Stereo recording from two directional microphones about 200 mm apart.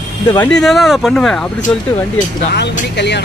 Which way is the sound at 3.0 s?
60° left (ahead or behind).